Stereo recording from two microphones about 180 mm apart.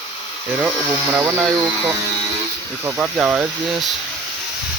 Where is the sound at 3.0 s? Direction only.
5° right (ahead or behind).